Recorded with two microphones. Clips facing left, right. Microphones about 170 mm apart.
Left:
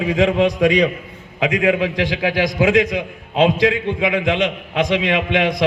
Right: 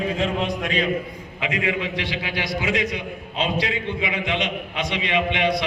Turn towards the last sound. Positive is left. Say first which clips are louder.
# left 4 dB
turn(degrees=90)